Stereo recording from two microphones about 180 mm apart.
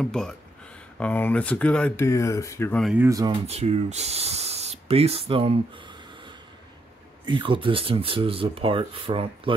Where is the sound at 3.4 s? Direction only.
35° right (ahead or behind).